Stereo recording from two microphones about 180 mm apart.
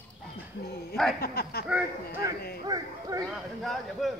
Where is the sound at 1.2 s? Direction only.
60° left (ahead or behind).